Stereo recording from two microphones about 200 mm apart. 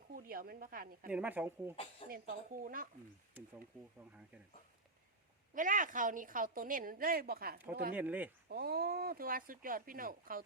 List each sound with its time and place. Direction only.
0.1 s a woman's voice: 45° right (ahead or behind)
1.1 s speech: 10° right (ahead or behind)
1.7 s speech: 30° left (ahead or behind)
2.0 s a woman's voice: 45° right (ahead or behind)
5.5 s a woman's voice: 40° right (ahead or behind)
7.9 s speech: 10° right (ahead or behind)
8.4 s a woman's voice: 50° right (ahead or behind)